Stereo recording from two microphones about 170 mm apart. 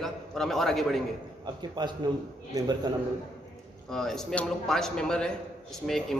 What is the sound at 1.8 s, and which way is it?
Speech, 25° right (ahead or behind).